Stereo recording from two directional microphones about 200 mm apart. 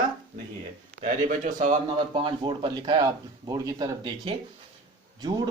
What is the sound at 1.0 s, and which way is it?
Speech, 40° right (ahead or behind).